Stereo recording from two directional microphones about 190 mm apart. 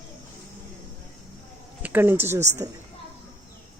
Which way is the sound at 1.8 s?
10° right (ahead or behind).